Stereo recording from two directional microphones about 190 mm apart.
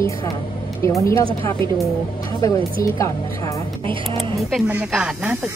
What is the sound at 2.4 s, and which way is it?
A woman's voice, 15° left (ahead or behind).